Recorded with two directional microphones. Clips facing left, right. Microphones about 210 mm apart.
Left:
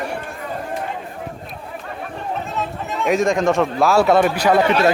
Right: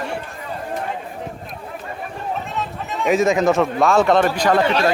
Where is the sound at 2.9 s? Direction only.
Centre (ahead or behind).